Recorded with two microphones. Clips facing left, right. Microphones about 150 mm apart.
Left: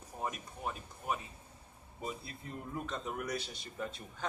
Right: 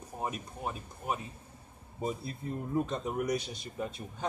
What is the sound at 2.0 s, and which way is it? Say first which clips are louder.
Speech: right 7 dB; 40° right (ahead or behind).